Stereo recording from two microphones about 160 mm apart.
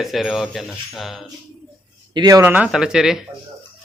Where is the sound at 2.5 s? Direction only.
5° right (ahead or behind).